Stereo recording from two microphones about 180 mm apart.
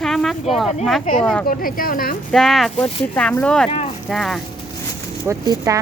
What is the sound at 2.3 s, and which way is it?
Speech, centre (ahead or behind).